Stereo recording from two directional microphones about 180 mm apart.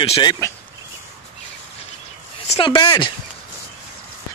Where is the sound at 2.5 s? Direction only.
30° left (ahead or behind).